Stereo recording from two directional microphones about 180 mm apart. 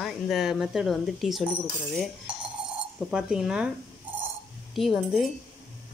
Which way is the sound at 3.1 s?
5° right (ahead or behind).